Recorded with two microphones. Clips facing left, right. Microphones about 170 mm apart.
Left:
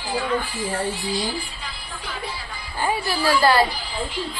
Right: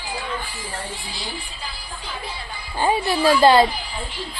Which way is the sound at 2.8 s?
25° right (ahead or behind).